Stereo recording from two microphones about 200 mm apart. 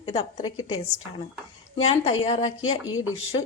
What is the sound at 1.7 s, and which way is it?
Speech, 30° left (ahead or behind).